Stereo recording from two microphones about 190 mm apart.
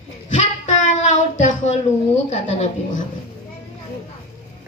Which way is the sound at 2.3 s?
40° left (ahead or behind).